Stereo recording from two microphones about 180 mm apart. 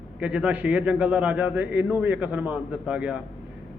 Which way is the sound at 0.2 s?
5° right (ahead or behind).